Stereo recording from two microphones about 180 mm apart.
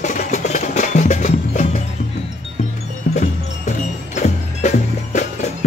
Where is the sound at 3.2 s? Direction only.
40° left (ahead or behind).